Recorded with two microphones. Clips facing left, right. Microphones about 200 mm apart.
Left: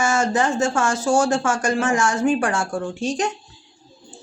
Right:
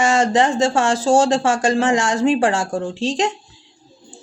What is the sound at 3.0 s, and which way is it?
Speech, 90° right.